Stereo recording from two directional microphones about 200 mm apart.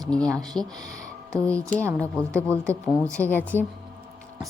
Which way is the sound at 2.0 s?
5° left (ahead or behind).